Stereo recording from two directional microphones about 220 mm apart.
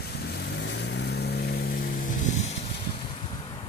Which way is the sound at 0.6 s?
50° left (ahead or behind).